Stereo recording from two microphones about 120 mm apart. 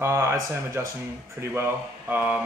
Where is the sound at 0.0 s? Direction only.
20° right (ahead or behind).